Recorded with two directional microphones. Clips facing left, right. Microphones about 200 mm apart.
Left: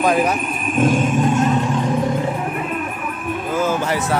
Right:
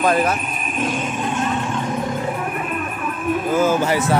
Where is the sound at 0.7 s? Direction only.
50° left (ahead or behind).